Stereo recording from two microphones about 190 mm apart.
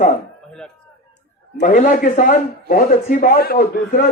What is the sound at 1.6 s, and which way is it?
A man's voice, 45° left (ahead or behind).